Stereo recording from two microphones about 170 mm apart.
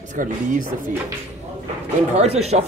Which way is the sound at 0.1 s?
50° right (ahead or behind).